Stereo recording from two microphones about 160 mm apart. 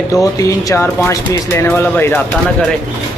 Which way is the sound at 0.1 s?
20° left (ahead or behind).